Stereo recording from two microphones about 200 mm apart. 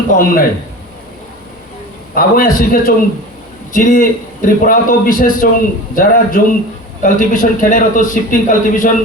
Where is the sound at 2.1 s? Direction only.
45° left (ahead or behind).